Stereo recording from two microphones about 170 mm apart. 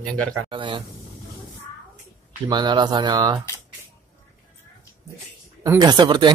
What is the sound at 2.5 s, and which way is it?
Speech, 25° right (ahead or behind).